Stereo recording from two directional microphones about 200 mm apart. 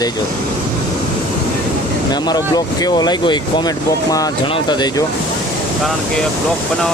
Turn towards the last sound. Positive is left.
turn(degrees=20)  # may be behind; listen again after turning